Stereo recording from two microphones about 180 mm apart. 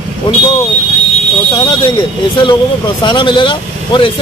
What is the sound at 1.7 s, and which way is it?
Speech, 25° left (ahead or behind).